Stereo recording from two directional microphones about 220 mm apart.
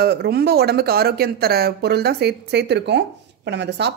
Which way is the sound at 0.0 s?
45° right (ahead or behind).